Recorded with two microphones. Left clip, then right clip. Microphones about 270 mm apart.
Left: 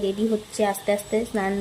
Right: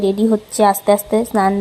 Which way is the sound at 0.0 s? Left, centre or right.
Right.